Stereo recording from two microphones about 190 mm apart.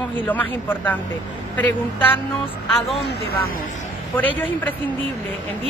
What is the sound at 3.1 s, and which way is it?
Speech, 55° left (ahead or behind).